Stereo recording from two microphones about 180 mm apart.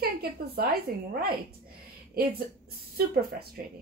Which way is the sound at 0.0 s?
60° right (ahead or behind).